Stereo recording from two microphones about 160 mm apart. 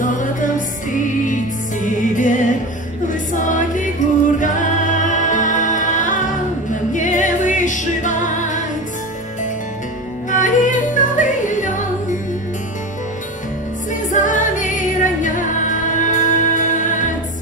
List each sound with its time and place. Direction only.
0.0 s music: 55° left (ahead or behind)
10.3 s music: 55° left (ahead or behind)
14.1 s music: 55° left (ahead or behind)